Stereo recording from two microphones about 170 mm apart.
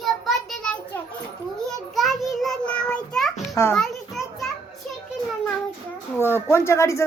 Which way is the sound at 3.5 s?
15° left (ahead or behind).